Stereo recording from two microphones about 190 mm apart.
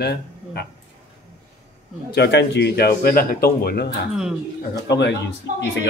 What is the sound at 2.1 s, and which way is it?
A man's voice, 65° left (ahead or behind).